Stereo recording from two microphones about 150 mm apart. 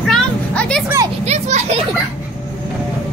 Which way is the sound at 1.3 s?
45° right (ahead or behind).